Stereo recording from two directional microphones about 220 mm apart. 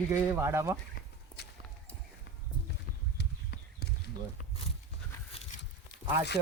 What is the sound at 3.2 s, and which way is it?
Horse, 50° left (ahead or behind).